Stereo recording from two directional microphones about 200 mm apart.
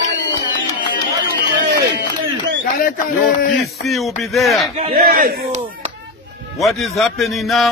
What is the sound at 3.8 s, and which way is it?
Speech, centre (ahead or behind).